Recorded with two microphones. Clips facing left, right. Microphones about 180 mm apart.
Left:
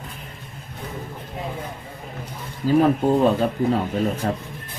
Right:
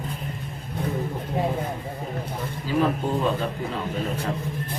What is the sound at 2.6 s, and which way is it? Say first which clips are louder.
Speech: left 8 dB; 45° left (ahead or behind).